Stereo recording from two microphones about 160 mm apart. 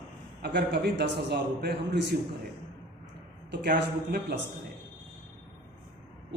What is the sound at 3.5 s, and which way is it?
Speech, 90° right.